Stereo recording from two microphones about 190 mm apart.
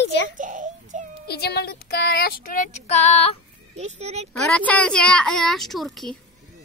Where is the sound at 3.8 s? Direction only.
35° right (ahead or behind).